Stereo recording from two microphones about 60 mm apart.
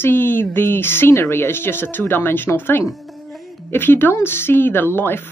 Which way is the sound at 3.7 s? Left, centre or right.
Left.